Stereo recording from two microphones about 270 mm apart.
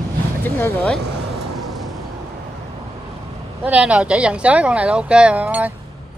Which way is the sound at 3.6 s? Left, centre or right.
Centre.